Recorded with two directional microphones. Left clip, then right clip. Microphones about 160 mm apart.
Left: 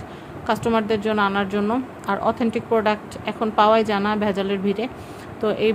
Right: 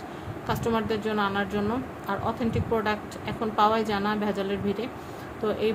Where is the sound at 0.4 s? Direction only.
55° left (ahead or behind).